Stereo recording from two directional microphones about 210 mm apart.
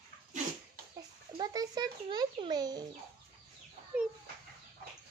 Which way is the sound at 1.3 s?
20° right (ahead or behind).